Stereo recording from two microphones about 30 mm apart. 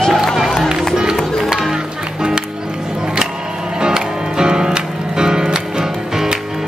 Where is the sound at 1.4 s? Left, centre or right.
Centre.